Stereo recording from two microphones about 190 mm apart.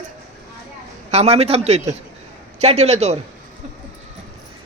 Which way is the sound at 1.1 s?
35° right (ahead or behind).